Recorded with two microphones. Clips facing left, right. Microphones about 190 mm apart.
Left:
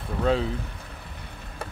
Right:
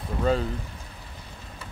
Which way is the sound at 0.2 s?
Centre (ahead or behind).